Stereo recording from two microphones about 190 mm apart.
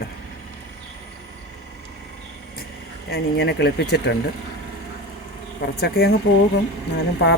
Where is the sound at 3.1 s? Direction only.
60° left (ahead or behind).